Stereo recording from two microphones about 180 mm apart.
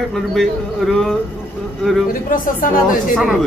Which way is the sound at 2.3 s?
50° left (ahead or behind).